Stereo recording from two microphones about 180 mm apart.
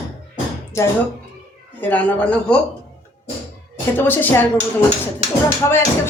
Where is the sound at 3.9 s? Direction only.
10° left (ahead or behind).